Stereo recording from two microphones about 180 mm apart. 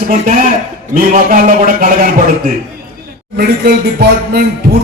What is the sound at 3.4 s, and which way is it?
Speech, 60° right (ahead or behind).